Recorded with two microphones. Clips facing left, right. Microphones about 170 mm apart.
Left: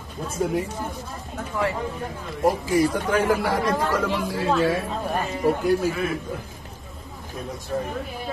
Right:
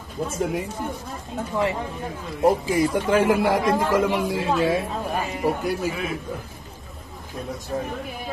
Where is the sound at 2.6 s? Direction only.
25° right (ahead or behind).